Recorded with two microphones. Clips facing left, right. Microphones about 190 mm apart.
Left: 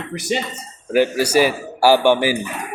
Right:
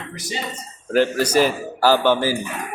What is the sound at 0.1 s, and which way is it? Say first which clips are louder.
Speech: left 10 dB; 65° left (ahead or behind).